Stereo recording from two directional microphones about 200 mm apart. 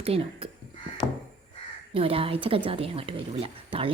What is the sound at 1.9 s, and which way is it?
Speech, 30° right (ahead or behind).